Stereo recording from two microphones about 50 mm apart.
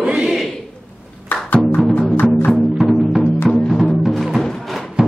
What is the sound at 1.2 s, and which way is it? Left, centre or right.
Music, left.